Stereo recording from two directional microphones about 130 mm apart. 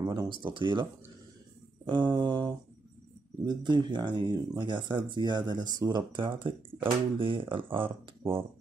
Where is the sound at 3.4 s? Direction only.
35° right (ahead or behind).